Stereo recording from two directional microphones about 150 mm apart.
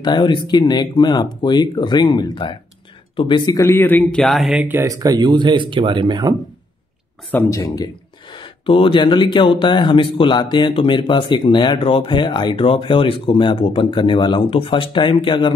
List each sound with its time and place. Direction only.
0.0 s speech: 30° left (ahead or behind)
3.6 s speech: 15° left (ahead or behind)
4.2 s speech: centre (ahead or behind)
4.8 s speech: 25° right (ahead or behind)
7.2 s speech: 15° left (ahead or behind)